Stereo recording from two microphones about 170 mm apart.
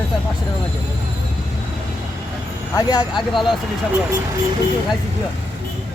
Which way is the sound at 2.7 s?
25° left (ahead or behind).